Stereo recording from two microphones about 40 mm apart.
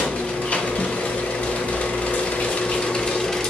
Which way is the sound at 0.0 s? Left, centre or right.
Left.